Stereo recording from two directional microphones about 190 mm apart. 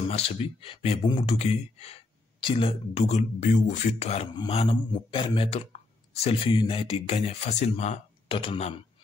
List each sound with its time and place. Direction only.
0.1 s speech: 30° left (ahead or behind)